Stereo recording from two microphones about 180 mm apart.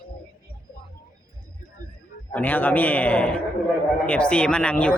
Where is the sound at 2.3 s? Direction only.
10° left (ahead or behind).